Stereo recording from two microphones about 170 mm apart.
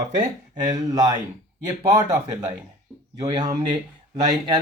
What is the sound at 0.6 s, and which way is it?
Speech, 20° right (ahead or behind).